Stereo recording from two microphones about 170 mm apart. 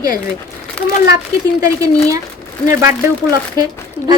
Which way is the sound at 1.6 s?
20° right (ahead or behind).